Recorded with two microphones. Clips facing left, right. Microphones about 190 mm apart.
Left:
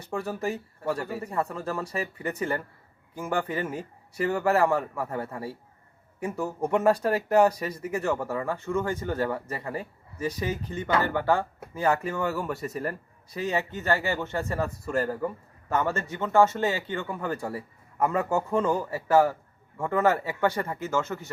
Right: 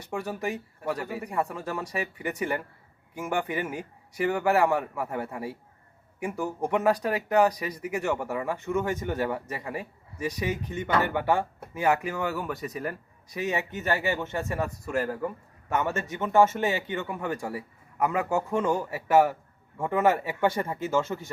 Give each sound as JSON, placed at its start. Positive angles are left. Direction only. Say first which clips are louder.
{"t": 0.1, "sound": "a man's voice", "louder": "left 1 dB", "side_deg": 0}
{"t": 6.3, "sound": "a man's voice", "louder": "left 1 dB", "side_deg": 0}
{"t": 8.4, "sound": "a man's voice", "louder": "even", "side_deg": -15}
{"t": 13.3, "sound": "a man's voice", "louder": "left 1 dB", "side_deg": -15}
{"t": 15.7, "sound": "a man's voice", "louder": "left 1 dB", "side_deg": -15}